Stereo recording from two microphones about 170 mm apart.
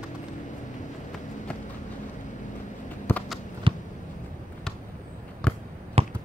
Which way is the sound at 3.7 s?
30° right (ahead or behind).